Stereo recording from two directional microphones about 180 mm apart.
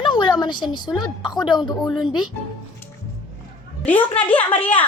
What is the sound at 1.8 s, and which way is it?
Speech, centre (ahead or behind).